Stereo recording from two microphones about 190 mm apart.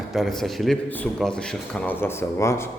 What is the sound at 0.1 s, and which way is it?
A man's voice, centre (ahead or behind).